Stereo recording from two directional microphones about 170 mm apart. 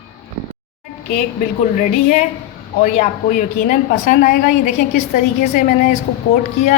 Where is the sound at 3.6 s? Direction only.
50° left (ahead or behind).